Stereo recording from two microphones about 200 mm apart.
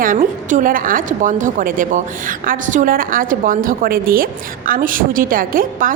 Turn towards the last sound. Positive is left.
turn(degrees=-45)  # may be behind; listen again after turning